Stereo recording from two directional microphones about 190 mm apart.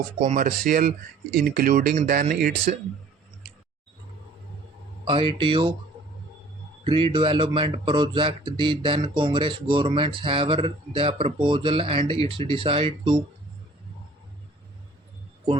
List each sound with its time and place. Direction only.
0.2 s speech: 45° right (ahead or behind)
5.0 s speech: 25° right (ahead or behind)
6.8 s speech: 25° right (ahead or behind)